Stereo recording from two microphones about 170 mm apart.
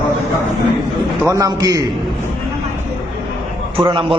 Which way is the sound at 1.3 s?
20° right (ahead or behind).